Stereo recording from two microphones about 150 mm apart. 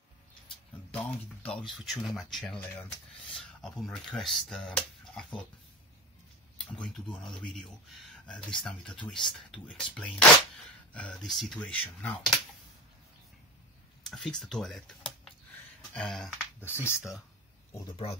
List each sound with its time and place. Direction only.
0.9 s speech: 10° left (ahead or behind)
6.6 s speech: 5° left (ahead or behind)
14.1 s speech: 5° left (ahead or behind)
16.6 s speech: 15° left (ahead or behind)
17.7 s speech: 35° left (ahead or behind)